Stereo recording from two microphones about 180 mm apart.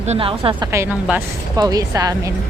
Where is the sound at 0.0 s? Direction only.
35° right (ahead or behind); by 2.3 s 20° right (ahead or behind).